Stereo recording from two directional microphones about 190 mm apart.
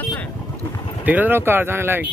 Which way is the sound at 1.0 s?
10° right (ahead or behind).